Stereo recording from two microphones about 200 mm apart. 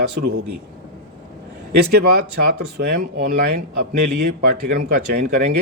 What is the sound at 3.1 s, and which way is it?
Speech, 50° right (ahead or behind).